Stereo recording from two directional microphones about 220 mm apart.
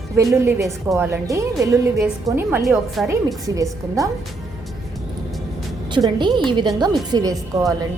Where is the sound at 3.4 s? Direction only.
15° right (ahead or behind).